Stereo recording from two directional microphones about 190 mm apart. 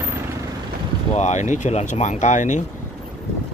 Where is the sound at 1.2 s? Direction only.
40° left (ahead or behind).